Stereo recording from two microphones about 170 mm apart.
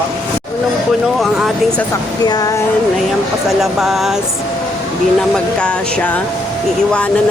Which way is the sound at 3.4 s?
Centre (ahead or behind).